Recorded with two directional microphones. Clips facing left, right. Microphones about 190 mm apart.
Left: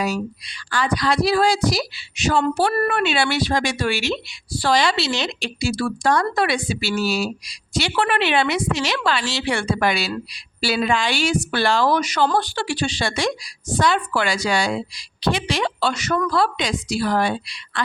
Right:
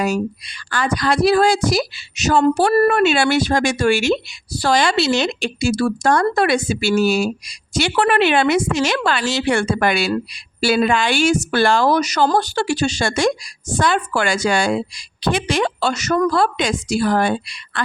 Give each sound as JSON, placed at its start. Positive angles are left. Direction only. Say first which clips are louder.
{"t": 0.0, "sound": "speech", "louder": "right 4 dB", "side_deg": -50}